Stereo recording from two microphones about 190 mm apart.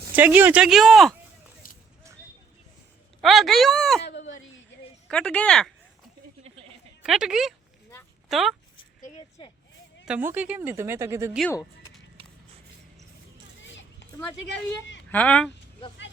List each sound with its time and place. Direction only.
0.2 s speech: 10° right (ahead or behind)
1.6 s a sound: 45° left (ahead or behind)
3.2 s speech: centre (ahead or behind)
4.0 s speech: 75° left (ahead or behind)
5.0 s speech: 5° left (ahead or behind)
7.0 s speech: 5° right (ahead or behind)
10.1 s a woman's voice: 10° right (ahead or behind)
15.1 s speech: 5° left (ahead or behind)